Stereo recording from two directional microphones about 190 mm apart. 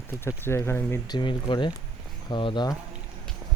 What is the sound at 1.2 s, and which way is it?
Speech, 25° left (ahead or behind).